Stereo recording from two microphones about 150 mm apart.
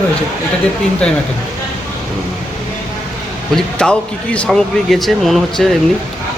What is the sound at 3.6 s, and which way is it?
Speech, 5° left (ahead or behind).